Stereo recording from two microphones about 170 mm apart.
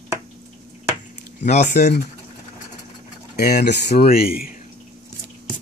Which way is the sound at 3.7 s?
75° left (ahead or behind).